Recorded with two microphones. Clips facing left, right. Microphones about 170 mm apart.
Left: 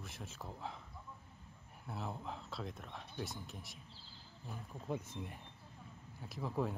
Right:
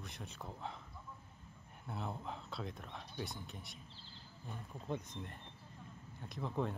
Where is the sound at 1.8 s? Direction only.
Centre (ahead or behind).